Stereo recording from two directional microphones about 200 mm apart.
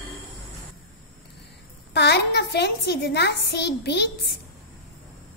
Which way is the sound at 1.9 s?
55° left (ahead or behind).